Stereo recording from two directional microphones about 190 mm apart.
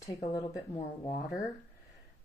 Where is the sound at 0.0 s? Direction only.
20° left (ahead or behind).